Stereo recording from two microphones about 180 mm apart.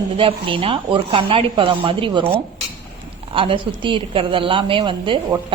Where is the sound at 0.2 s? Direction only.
30° right (ahead or behind).